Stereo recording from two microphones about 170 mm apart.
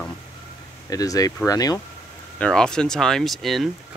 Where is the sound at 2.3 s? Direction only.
5° left (ahead or behind).